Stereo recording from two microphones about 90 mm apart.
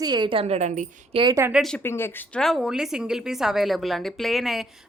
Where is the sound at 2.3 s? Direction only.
5° left (ahead or behind).